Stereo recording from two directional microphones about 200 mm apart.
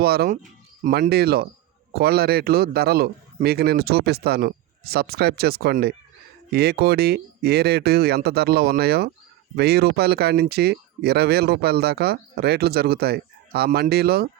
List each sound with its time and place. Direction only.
0.0 s speech: 50° right (ahead or behind)